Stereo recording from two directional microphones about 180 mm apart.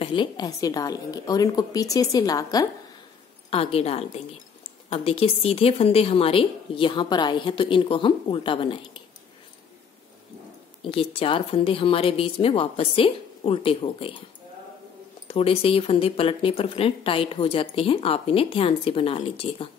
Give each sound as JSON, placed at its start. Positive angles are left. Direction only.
{"t": 0.0, "sound": "a woman's voice", "side_deg": 25}
{"t": 3.4, "sound": "a woman's voice", "side_deg": 35}
{"t": 10.8, "sound": "speech", "side_deg": 30}
{"t": 15.2, "sound": "speech", "side_deg": 30}